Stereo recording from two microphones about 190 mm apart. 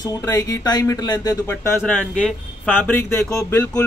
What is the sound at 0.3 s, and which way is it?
Speech, 20° left (ahead or behind).